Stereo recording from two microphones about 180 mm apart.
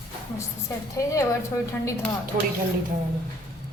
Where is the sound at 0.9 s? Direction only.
20° left (ahead or behind).